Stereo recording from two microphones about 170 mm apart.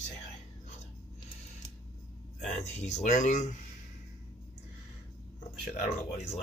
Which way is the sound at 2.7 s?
45° left (ahead or behind).